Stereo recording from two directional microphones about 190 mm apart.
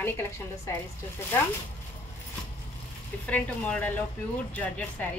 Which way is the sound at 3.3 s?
5° left (ahead or behind).